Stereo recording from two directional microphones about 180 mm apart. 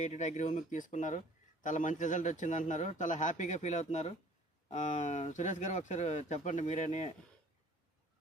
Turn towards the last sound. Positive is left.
turn(degrees=40)  # may be behind; listen again after turning